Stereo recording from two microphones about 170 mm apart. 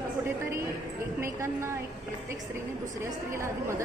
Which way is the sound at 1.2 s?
15° right (ahead or behind).